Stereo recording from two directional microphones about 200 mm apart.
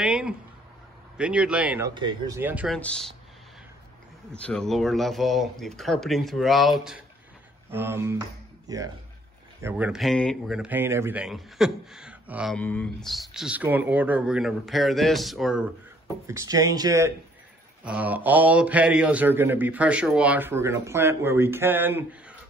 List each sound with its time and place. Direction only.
0.0 s speech: 5° right (ahead or behind)
2.0 s a man's voice: 20° right (ahead or behind); by 3.2 s 5° left (ahead or behind)
4.3 s a man's voice: 5° left (ahead or behind)
12.5 s speech: 5° left (ahead or behind)
16.3 s a man's voice: 15° right (ahead or behind)